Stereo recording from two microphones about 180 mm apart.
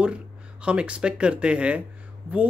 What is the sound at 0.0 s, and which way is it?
Speech, 5° right (ahead or behind).